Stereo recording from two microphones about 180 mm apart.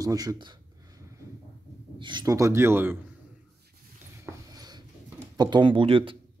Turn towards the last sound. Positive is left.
turn(degrees=-30)  # may be behind; listen again after turning